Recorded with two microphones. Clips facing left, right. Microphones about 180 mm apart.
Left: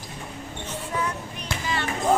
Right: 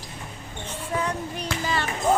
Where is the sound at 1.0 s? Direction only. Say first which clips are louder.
Right 2 dB; 35° right (ahead or behind).